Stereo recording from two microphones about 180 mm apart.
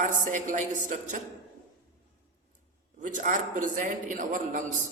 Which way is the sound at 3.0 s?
45° right (ahead or behind).